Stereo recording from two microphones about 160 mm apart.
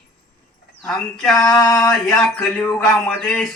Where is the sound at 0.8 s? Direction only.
5° left (ahead or behind).